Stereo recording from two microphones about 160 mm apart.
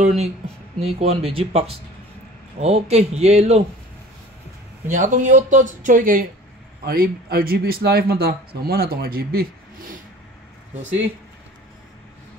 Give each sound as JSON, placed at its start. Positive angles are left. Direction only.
{"t": 0.0, "sound": "speech", "side_deg": -45}
{"t": 4.8, "sound": "speech", "side_deg": -50}
{"t": 6.8, "sound": "speech", "side_deg": -75}